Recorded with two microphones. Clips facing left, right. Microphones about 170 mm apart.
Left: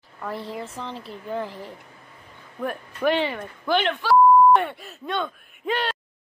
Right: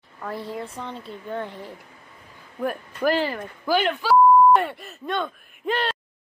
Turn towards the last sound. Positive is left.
turn(degrees=0)  # may be behind; listen again after turning